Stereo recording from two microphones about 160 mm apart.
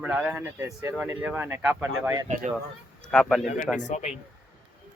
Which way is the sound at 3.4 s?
50° left (ahead or behind).